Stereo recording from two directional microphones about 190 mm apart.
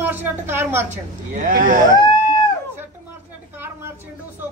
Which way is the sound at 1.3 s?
45° right (ahead or behind).